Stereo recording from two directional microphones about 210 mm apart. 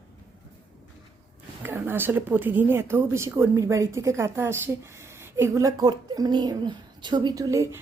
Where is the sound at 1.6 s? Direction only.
10° right (ahead or behind).